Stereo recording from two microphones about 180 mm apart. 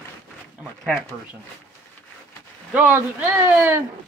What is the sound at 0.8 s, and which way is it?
Speech, 5° right (ahead or behind).